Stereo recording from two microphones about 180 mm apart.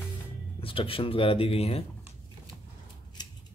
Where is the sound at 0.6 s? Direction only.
30° left (ahead or behind).